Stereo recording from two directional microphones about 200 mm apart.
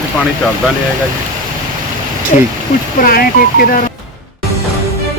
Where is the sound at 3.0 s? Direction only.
45° left (ahead or behind).